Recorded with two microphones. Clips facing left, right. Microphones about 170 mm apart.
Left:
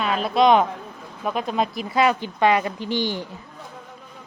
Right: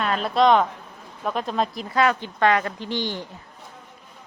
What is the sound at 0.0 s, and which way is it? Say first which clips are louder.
Speech: left 1 dB; 5° left (ahead or behind).